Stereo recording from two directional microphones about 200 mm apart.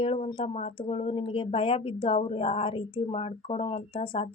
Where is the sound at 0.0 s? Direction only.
25° left (ahead or behind).